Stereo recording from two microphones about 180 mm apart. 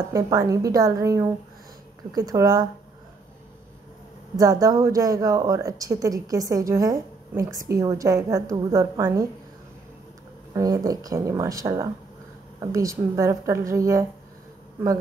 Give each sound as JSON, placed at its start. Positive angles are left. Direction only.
{"t": 0.1, "sound": "speech", "side_deg": -20}
{"t": 4.4, "sound": "speech", "side_deg": -20}
{"t": 10.5, "sound": "a woman's voice", "side_deg": -20}